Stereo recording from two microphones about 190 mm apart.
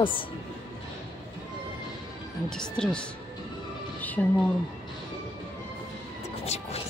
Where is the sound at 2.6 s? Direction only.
5° left (ahead or behind).